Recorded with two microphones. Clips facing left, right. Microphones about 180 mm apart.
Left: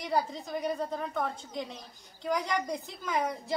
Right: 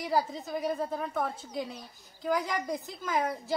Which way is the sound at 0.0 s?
Centre (ahead or behind).